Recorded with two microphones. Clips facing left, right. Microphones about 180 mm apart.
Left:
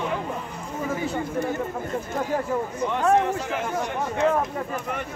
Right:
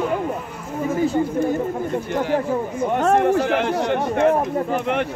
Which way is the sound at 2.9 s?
50° right (ahead or behind).